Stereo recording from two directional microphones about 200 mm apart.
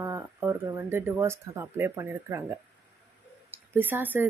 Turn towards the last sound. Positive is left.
turn(degrees=-10)  # may be behind; listen again after turning